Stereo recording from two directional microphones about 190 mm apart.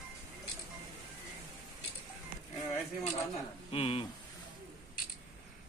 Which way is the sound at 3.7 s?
30° left (ahead or behind).